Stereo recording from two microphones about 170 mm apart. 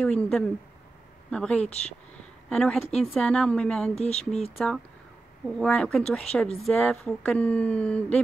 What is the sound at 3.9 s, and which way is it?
Speech, 40° left (ahead or behind).